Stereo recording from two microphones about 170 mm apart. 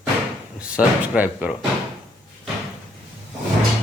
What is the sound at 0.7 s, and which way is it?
Speech, 10° right (ahead or behind).